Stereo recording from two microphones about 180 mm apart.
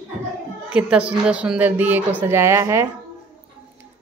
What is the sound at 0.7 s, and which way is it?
A woman's voice, 5° right (ahead or behind).